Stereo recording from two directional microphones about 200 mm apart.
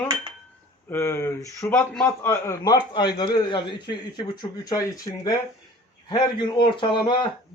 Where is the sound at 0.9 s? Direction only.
15° left (ahead or behind).